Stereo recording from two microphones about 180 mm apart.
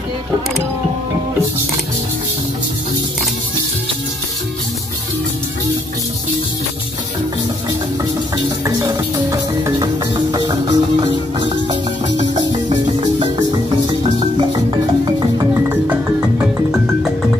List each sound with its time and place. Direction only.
8.6 s music: 20° right (ahead or behind)
16.7 s music: centre (ahead or behind)